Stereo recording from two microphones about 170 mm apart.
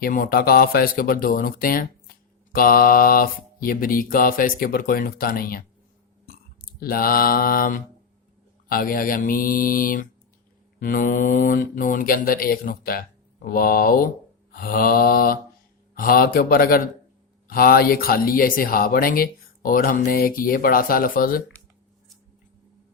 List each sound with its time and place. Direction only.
0.0 s speech: 55° left (ahead or behind)
6.7 s speech: 60° left (ahead or behind)